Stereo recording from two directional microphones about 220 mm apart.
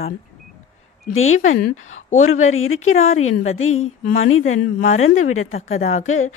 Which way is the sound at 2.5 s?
65° left (ahead or behind).